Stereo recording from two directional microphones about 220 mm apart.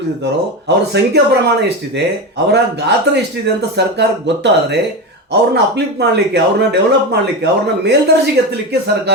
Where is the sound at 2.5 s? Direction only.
50° right (ahead or behind).